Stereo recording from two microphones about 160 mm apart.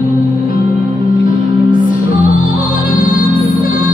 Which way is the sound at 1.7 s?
60° left (ahead or behind).